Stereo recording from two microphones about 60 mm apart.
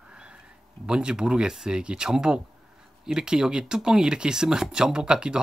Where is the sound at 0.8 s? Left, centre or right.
Centre.